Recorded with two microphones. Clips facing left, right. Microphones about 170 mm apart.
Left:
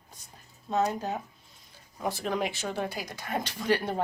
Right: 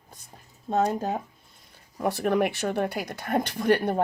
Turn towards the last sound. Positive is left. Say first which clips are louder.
# right 5 dB
turn(degrees=-55)  # may be behind; listen again after turning